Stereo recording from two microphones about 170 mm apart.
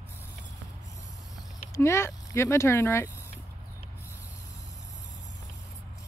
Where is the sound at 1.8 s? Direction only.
15° left (ahead or behind).